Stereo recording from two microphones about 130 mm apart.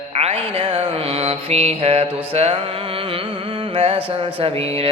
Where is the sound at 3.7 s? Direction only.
45° right (ahead or behind).